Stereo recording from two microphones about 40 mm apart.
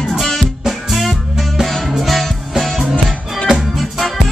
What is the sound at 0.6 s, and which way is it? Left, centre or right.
Music, centre.